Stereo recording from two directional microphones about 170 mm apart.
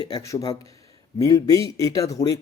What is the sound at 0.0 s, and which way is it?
A man's voice, 20° left (ahead or behind).